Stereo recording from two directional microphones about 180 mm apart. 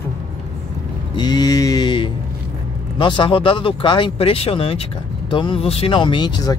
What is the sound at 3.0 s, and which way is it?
Speech, 25° left (ahead or behind).